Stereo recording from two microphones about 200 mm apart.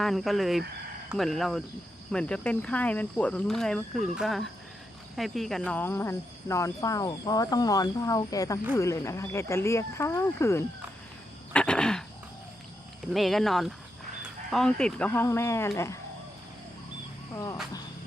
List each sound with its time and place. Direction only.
0.0 s speech: centre (ahead or behind)
11.5 s a sound: 5° left (ahead or behind)
13.1 s speech: centre (ahead or behind)
17.3 s speech: 15° left (ahead or behind)